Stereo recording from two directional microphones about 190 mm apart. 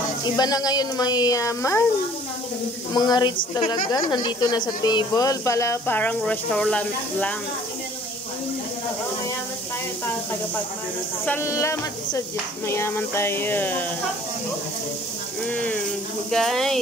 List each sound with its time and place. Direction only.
0.4 s a woman's voice: 20° left (ahead or behind)
2.9 s a woman's voice: 20° left (ahead or behind)
11.2 s speech: 15° left (ahead or behind)
15.4 s speech: 5° left (ahead or behind)